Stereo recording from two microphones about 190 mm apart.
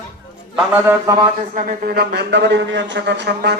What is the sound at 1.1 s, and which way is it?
Speech, 20° right (ahead or behind).